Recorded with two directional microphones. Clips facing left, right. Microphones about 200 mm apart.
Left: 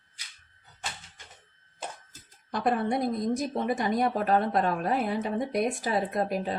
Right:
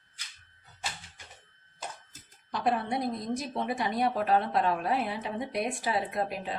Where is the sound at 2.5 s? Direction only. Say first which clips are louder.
Left 3 dB; 50° left (ahead or behind).